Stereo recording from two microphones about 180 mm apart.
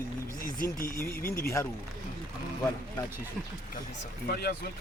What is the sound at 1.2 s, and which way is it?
Speech, 55° left (ahead or behind).